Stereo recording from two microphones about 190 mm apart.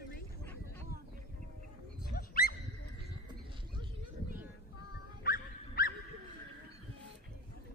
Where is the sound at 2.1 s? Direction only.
50° left (ahead or behind).